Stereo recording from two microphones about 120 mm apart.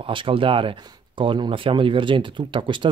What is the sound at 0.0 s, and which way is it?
Speech, 45° right (ahead or behind).